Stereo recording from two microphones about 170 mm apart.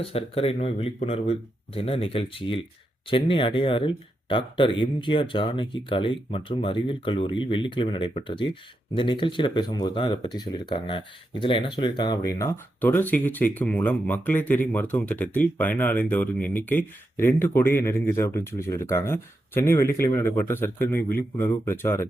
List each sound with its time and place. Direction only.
0.0 s speech: 35° left (ahead or behind); by 22.0 s 15° left (ahead or behind)